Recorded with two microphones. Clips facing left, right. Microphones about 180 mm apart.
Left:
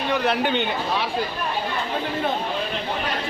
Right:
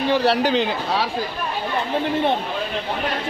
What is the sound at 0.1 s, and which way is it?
Speech, 35° right (ahead or behind).